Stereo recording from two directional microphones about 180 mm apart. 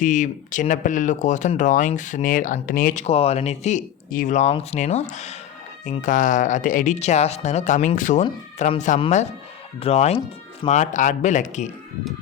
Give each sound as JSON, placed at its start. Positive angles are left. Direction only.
{"t": 0.0, "sound": "speech", "side_deg": 45}